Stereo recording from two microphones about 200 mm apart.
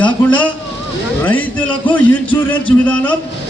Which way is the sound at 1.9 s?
10° left (ahead or behind).